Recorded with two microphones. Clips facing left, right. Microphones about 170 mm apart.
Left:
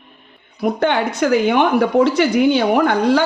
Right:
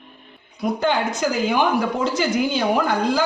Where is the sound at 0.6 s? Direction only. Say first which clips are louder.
Left 4 dB; 65° left (ahead or behind).